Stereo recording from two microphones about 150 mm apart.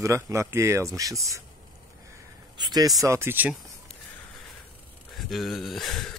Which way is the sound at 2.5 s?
30° right (ahead or behind).